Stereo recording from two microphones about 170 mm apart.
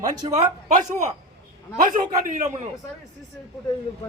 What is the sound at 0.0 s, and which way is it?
Speech, 20° right (ahead or behind).